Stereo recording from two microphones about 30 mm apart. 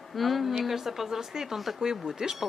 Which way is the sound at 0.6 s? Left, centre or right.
Centre.